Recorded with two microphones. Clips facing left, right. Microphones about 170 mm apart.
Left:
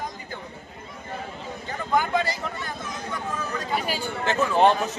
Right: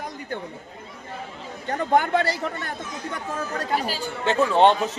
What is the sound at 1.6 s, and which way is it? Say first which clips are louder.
Speech: right 4 dB; 65° right (ahead or behind).